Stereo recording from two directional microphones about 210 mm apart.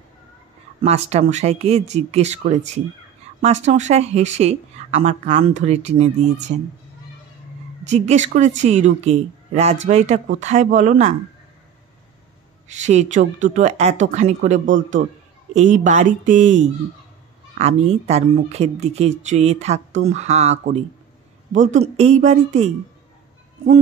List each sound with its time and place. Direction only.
0.8 s speech: 30° right (ahead or behind)
7.9 s speech: 35° right (ahead or behind)
12.6 s speech: 35° right (ahead or behind)
21.5 s speech: 35° right (ahead or behind)